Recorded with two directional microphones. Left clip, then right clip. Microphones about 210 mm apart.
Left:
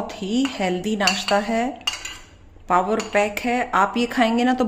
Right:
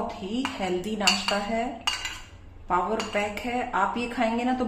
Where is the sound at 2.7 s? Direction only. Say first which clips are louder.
Left 6 dB; 50° left (ahead or behind).